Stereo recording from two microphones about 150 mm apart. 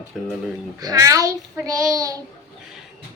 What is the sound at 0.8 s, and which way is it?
A child's voice, 25° right (ahead or behind).